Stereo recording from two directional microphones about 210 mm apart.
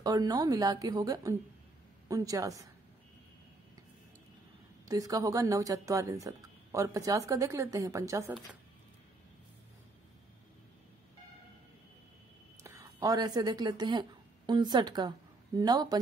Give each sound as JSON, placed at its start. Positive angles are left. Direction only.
{"t": 0.0, "sound": "speech", "side_deg": -15}
{"t": 4.8, "sound": "speech", "side_deg": -15}
{"t": 12.6, "sound": "speech", "side_deg": -15}